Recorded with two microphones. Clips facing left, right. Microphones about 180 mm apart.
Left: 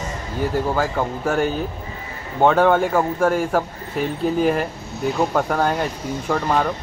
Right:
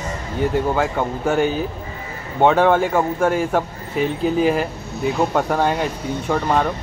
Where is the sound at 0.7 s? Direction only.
Centre (ahead or behind).